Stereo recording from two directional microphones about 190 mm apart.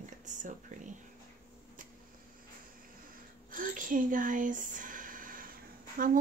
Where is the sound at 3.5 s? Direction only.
45° right (ahead or behind).